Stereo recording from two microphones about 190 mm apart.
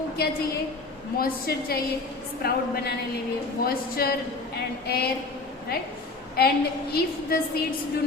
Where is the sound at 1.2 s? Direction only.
55° left (ahead or behind).